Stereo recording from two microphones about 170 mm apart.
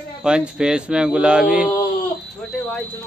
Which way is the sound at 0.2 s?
5° right (ahead or behind).